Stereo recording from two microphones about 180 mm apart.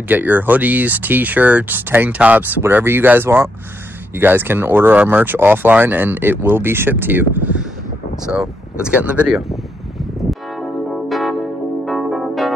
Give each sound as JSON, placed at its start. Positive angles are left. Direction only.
{"t": 0.1, "sound": "speech", "side_deg": -10}
{"t": 10.6, "sound": "music", "side_deg": 0}